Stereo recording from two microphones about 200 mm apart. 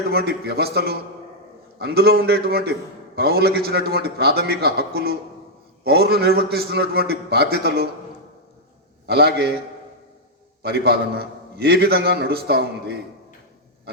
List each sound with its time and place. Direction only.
0.1 s a man's voice: 50° right (ahead or behind)
9.0 s a man's voice: 55° right (ahead or behind)
10.6 s a man's voice: 55° right (ahead or behind)